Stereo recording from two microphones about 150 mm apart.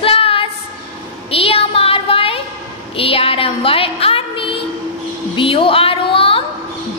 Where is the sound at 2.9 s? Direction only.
40° left (ahead or behind).